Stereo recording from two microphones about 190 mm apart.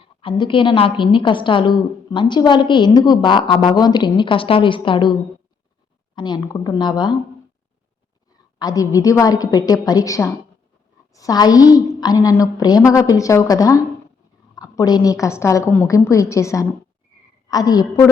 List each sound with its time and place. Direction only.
0.0 s a woman's voice: 25° left (ahead or behind)
6.1 s a woman's voice: 20° left (ahead or behind)
8.5 s a woman's voice: 20° left (ahead or behind)